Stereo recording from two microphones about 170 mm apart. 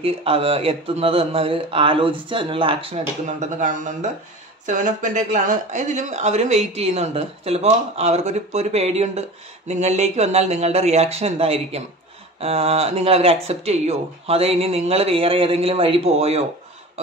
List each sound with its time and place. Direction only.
0.0 s speech: 35° right (ahead or behind)
3.3 s speech: 45° right (ahead or behind)